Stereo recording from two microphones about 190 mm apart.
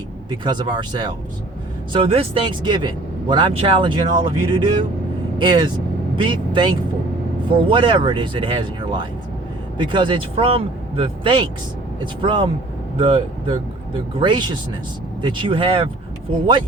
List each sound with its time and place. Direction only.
0.3 s speech: 25° right (ahead or behind)
9.7 s speech: 25° right (ahead or behind)